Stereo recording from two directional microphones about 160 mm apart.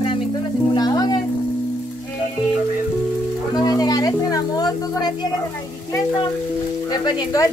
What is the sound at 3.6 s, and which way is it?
Music, 25° left (ahead or behind).